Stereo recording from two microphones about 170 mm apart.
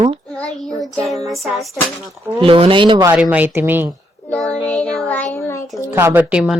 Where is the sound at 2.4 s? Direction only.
30° right (ahead or behind).